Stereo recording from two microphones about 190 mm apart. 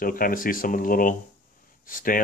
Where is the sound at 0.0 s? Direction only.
50° left (ahead or behind).